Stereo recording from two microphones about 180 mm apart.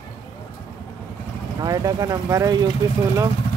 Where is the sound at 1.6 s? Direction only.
20° right (ahead or behind).